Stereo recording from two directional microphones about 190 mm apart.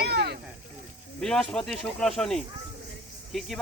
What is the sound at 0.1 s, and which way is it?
Snake, 55° right (ahead or behind).